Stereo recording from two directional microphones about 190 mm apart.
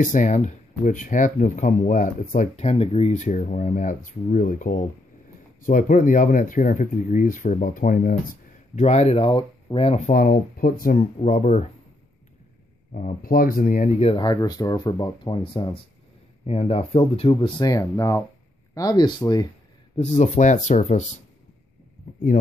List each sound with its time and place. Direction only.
0.0 s speech: 40° left (ahead or behind)
11.0 s speech: 35° left (ahead or behind)
12.9 s speech: 45° left (ahead or behind); by 19.4 s 20° left (ahead or behind)
20.0 s speech: 40° left (ahead or behind)